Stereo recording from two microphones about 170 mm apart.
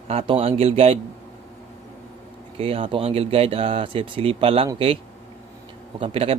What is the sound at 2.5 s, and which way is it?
Speech, 35° right (ahead or behind).